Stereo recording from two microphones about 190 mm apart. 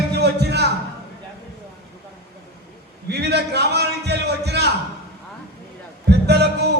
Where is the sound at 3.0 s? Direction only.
60° right (ahead or behind).